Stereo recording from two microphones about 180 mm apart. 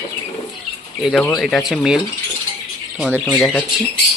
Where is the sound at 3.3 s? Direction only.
5° left (ahead or behind).